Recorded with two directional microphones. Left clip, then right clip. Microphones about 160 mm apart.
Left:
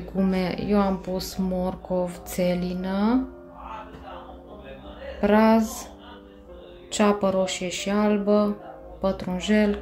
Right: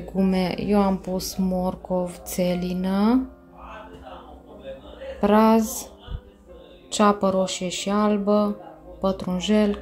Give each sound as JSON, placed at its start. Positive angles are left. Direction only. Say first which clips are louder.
{"t": 0.1, "sound": "speech", "louder": "right 2 dB", "side_deg": -10}
{"t": 5.2, "sound": "speech", "louder": "right 1 dB", "side_deg": -20}
{"t": 6.9, "sound": "speech", "louder": "right 2 dB", "side_deg": -15}